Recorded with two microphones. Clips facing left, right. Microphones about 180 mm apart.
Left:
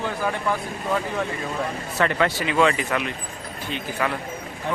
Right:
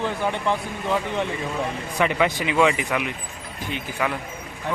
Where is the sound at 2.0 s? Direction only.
15° right (ahead or behind).